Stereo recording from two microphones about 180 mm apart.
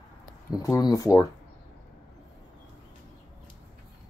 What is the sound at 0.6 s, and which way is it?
Speech, 20° left (ahead or behind).